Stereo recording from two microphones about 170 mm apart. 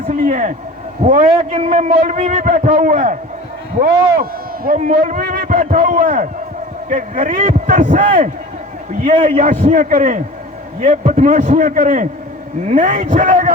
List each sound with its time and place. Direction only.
0.1 s a man's voice: 50° right (ahead or behind)